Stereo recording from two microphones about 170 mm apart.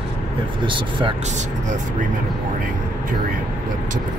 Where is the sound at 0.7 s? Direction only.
30° right (ahead or behind).